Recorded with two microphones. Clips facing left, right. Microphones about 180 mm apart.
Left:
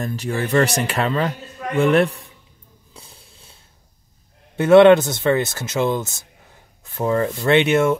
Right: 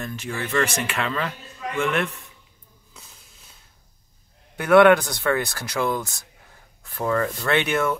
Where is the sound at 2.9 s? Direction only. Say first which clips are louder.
Left 5 dB; 30° left (ahead or behind).